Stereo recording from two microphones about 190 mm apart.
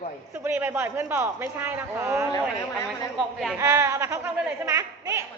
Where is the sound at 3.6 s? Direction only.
15° right (ahead or behind).